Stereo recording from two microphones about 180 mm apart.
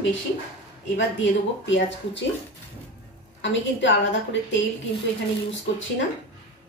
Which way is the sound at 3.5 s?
90° left.